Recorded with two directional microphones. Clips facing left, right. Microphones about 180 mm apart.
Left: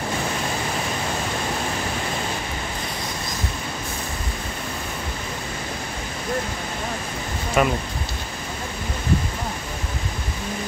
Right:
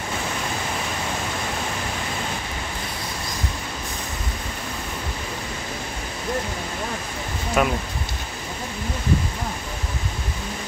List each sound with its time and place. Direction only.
7.6 s speech: centre (ahead or behind)